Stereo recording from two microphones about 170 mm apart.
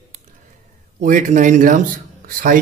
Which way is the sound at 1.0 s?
50° right (ahead or behind).